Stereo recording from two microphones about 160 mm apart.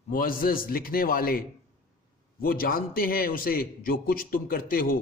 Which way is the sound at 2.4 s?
65° left (ahead or behind).